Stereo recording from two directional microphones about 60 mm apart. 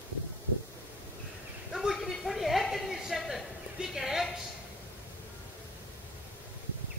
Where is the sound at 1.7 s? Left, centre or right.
Centre.